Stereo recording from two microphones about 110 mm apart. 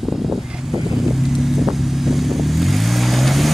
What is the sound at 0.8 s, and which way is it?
Vehicle, centre (ahead or behind).